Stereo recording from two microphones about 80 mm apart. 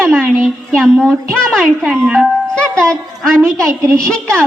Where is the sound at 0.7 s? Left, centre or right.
Centre.